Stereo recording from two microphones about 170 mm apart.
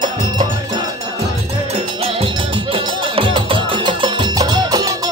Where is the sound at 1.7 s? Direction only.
35° right (ahead or behind).